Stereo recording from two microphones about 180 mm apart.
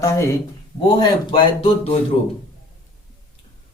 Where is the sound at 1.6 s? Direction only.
35° left (ahead or behind).